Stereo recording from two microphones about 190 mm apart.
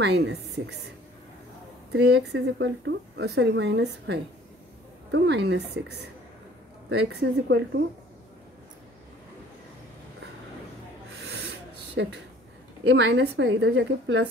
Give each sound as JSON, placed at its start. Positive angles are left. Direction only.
{"t": 0.0, "sound": "a woman's voice", "side_deg": -65}
{"t": 1.9, "sound": "a woman's voice", "side_deg": -60}
{"t": 6.9, "sound": "a woman's voice", "side_deg": -60}
{"t": 11.2, "sound": "a sound", "side_deg": -60}
{"t": 12.8, "sound": "a woman's voice", "side_deg": -65}